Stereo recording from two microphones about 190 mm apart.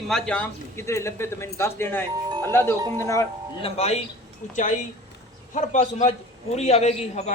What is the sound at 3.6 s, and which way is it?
Speech, 35° left (ahead or behind).